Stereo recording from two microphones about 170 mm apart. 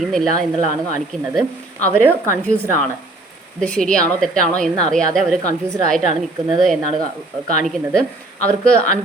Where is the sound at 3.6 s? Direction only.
5° left (ahead or behind).